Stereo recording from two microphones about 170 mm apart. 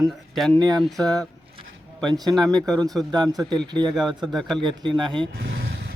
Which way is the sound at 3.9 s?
Centre (ahead or behind).